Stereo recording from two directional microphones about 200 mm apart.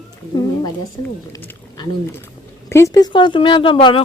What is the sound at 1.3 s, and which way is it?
Speech, 10° left (ahead or behind).